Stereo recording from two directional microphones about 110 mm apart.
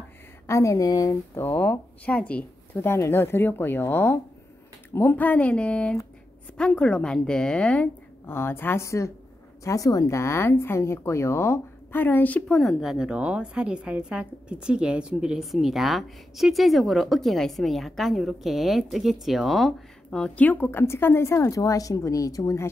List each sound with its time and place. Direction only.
0.5 s a woman's voice: 30° left (ahead or behind)
12.5 s a woman's voice: centre (ahead or behind); by 22.7 s 30° left (ahead or behind)